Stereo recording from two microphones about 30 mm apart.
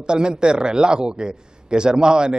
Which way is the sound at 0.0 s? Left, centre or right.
Right.